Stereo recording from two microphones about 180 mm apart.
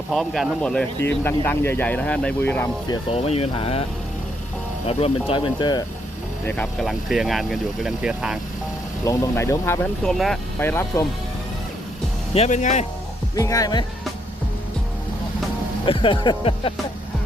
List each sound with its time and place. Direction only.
0.1 s speech: centre (ahead or behind)
2.9 s speech: 35° left (ahead or behind)
4.9 s speech: 35° left (ahead or behind)
6.4 s speech: 10° left (ahead or behind)
9.0 s speech: 15° left (ahead or behind)
10.6 s speech: 10° left (ahead or behind)
12.3 s speech: 40° left (ahead or behind)
13.3 s speech: 20° left (ahead or behind)
15.9 s speech: 25° left (ahead or behind)